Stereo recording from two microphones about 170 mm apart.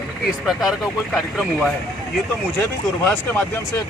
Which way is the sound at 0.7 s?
Centre (ahead or behind).